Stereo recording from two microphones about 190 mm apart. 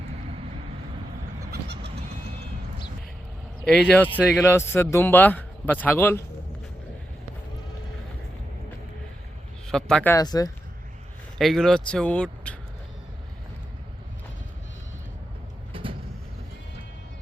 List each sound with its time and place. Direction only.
3.6 s speech: 5° left (ahead or behind)
4.1 s speech: 5° right (ahead or behind)
4.4 s a man's voice: 10° left (ahead or behind)
9.6 s a man's voice: 5° left (ahead or behind); by 10.5 s 20° left (ahead or behind)
11.3 s speech: centre (ahead or behind)
15.7 s vehicle: 30° right (ahead or behind)